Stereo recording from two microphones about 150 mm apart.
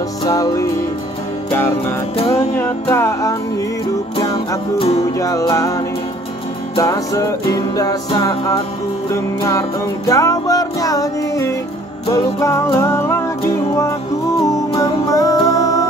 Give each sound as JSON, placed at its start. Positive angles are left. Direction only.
{"t": 0.2, "sound": "music", "side_deg": 25}
{"t": 4.7, "sound": "music", "side_deg": 45}
{"t": 5.2, "sound": "music", "side_deg": 20}
{"t": 6.8, "sound": "music", "side_deg": 20}
{"t": 14.8, "sound": "music", "side_deg": 25}